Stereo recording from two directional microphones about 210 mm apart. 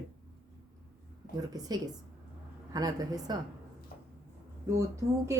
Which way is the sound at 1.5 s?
20° right (ahead or behind).